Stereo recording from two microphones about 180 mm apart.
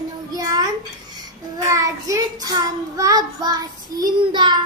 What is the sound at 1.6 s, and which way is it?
A child's voice, 15° right (ahead or behind).